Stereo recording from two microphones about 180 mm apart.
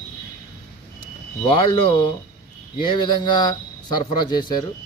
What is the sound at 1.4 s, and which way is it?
Speech, 25° left (ahead or behind).